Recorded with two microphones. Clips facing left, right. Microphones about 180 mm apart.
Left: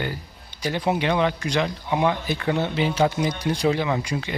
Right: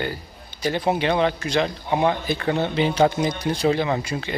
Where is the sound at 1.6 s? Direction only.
35° right (ahead or behind).